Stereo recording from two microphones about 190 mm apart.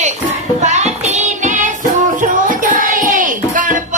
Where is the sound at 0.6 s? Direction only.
35° right (ahead or behind).